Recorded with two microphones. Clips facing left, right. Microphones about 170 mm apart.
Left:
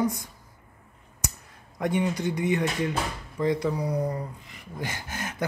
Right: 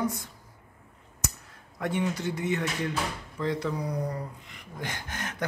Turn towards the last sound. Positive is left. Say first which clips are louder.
# left 2 dB
turn(degrees=10)  # may be behind; listen again after turning